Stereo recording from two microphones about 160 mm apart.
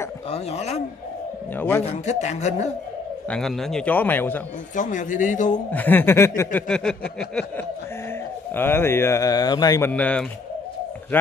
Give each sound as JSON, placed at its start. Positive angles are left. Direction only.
{"t": 0.3, "sound": "a man's voice", "side_deg": 40}
{"t": 3.3, "sound": "speech", "side_deg": 5}
{"t": 4.7, "sound": "a man's voice", "side_deg": 55}
{"t": 5.7, "sound": "speech", "side_deg": 10}
{"t": 6.7, "sound": "a sound", "side_deg": 5}
{"t": 8.5, "sound": "speech", "side_deg": 15}
{"t": 9.8, "sound": "speech", "side_deg": 10}